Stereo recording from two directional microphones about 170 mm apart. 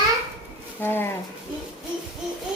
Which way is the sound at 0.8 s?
15° left (ahead or behind).